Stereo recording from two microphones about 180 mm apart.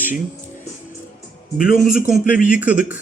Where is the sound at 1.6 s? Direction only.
50° left (ahead or behind).